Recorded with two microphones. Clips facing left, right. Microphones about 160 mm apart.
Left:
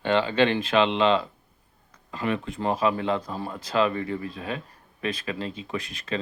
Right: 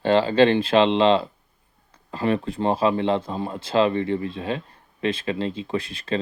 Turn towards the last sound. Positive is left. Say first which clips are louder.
# right 5 dB
turn(degrees=-30)  # may be behind; listen again after turning